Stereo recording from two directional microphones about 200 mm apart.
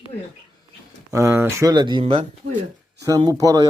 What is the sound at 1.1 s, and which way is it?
Speech, 15° right (ahead or behind).